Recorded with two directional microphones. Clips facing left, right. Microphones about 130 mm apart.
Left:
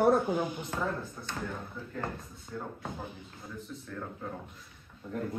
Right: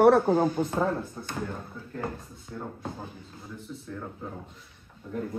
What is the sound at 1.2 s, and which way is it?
Speech, 25° right (ahead or behind).